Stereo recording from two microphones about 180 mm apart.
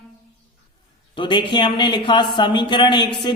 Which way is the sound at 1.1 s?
25° left (ahead or behind).